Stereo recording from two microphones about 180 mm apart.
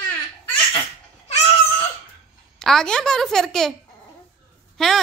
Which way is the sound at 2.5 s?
Centre (ahead or behind).